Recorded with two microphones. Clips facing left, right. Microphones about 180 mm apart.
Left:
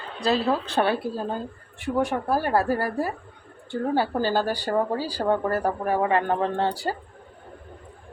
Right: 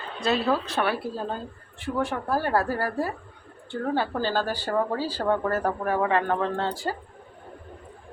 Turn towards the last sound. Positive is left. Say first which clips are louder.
# left 2 dB
turn(degrees=15)  # may be behind; listen again after turning